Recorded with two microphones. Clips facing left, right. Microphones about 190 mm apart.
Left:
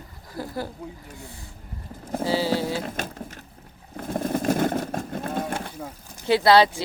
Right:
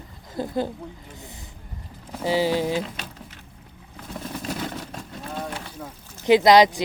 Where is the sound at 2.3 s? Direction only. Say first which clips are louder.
Right 3 dB; 15° right (ahead or behind).